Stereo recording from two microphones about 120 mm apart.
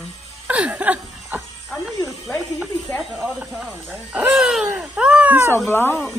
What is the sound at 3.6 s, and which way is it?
Baby cry, 10° right (ahead or behind).